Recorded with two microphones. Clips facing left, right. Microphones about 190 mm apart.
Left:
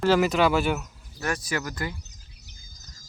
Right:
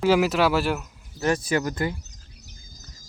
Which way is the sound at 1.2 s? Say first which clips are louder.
Right 6 dB; 25° right (ahead or behind).